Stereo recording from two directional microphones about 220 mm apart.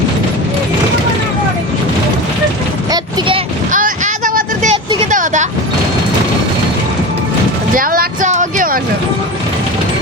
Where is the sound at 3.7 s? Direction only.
35° right (ahead or behind).